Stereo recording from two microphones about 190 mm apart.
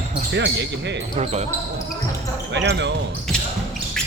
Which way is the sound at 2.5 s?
65° right (ahead or behind).